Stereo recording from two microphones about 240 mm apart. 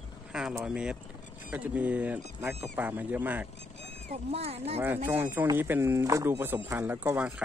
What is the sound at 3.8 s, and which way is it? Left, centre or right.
Speech, right.